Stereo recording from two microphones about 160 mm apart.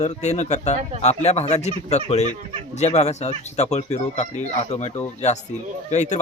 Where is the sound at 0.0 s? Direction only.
45° left (ahead or behind).